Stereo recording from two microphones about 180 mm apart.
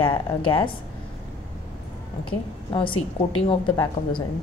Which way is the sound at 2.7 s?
30° left (ahead or behind).